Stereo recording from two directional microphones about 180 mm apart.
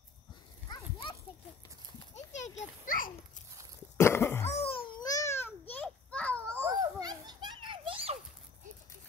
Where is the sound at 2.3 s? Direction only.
40° left (ahead or behind).